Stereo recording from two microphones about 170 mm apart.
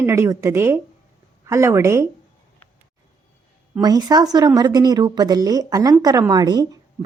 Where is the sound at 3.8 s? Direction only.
25° right (ahead or behind).